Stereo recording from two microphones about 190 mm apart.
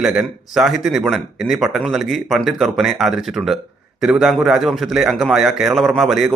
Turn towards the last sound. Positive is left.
turn(degrees=0)  # may be behind; listen again after turning